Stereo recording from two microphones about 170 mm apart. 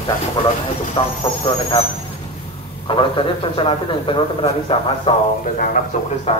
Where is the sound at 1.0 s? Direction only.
30° left (ahead or behind).